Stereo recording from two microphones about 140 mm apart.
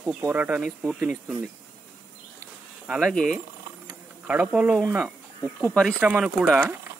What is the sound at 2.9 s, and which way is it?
Speech, centre (ahead or behind).